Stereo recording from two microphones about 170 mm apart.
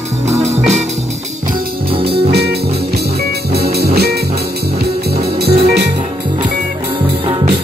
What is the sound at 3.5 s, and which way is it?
Music, 70° right (ahead or behind).